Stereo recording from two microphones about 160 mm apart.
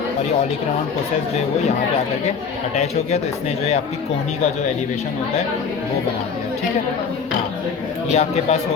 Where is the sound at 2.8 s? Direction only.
45° left (ahead or behind).